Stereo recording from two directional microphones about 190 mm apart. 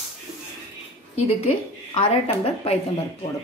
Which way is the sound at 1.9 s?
30° left (ahead or behind).